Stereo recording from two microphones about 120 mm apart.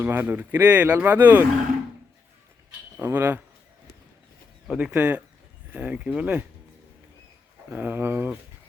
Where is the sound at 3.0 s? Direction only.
15° right (ahead or behind).